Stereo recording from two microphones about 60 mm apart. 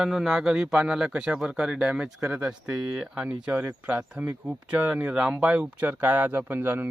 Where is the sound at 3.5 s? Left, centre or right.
Right.